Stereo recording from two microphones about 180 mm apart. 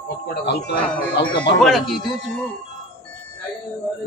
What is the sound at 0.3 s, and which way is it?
Speech, 60° left (ahead or behind).